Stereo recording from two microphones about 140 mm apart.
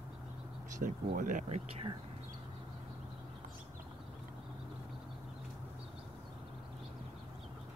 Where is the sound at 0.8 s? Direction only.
70° right (ahead or behind); by 1.9 s 55° right (ahead or behind).